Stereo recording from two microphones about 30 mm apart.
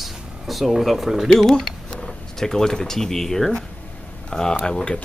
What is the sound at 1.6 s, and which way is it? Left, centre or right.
Speech, centre.